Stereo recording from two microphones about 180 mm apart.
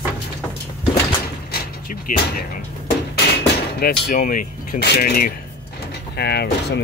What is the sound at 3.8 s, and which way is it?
Speech, 50° left (ahead or behind).